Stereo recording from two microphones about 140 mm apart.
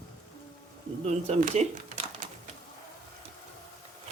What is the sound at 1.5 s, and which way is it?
Speech, 50° right (ahead or behind).